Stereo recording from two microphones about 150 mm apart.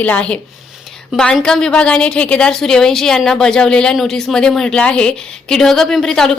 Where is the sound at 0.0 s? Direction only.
10° left (ahead or behind).